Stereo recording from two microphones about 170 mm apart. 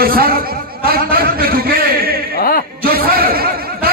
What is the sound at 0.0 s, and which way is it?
Speech, 60° right (ahead or behind).